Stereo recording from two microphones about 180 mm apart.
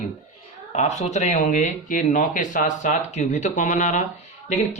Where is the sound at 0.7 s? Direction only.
40° left (ahead or behind).